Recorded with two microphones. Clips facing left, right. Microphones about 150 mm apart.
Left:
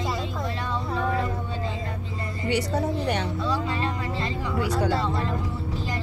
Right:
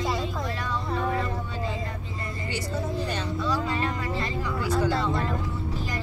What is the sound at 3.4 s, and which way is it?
Music, 25° left (ahead or behind).